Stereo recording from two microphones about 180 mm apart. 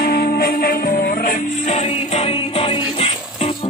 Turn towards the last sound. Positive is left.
turn(degrees=35)  # may be behind; listen again after turning